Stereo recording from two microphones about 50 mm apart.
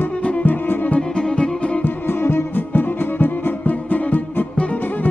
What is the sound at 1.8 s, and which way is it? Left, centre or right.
Music, left.